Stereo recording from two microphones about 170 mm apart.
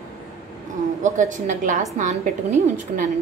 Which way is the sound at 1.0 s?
45° right (ahead or behind).